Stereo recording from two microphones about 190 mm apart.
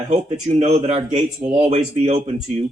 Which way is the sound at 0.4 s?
35° right (ahead or behind).